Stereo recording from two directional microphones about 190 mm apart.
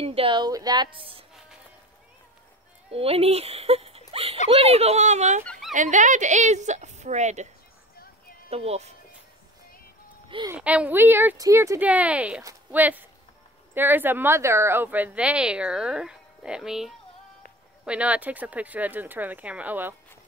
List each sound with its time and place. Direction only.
0.0 s speech: 30° right (ahead or behind)
2.9 s speech: 30° right (ahead or behind)
8.5 s speech: 30° right (ahead or behind)
10.2 s a child's voice: 25° right (ahead or behind)
10.5 s a woman's voice: 5° right (ahead or behind)